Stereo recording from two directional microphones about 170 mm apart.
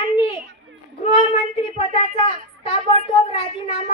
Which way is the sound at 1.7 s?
35° left (ahead or behind).